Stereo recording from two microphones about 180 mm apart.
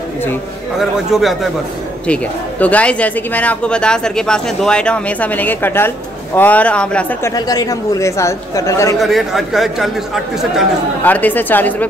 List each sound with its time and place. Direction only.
0.7 s speech: centre (ahead or behind)
7.3 s speech: 20° left (ahead or behind)
9.0 s speech: centre (ahead or behind)
11.1 s speech: 10° left (ahead or behind)